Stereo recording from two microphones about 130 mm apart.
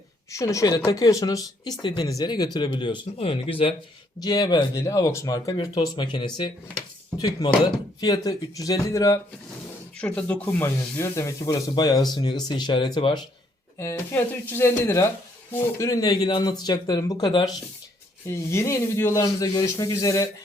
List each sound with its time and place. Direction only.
0.3 s speech: 25° left (ahead or behind); by 3.8 s 45° left (ahead or behind)
4.2 s speech: 30° left (ahead or behind)
10.0 s speech: 10° left (ahead or behind); by 13.1 s 35° left (ahead or behind)
13.7 s speech: 20° left (ahead or behind)